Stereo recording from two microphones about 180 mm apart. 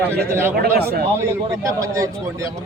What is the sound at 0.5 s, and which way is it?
Speech, 60° right (ahead or behind).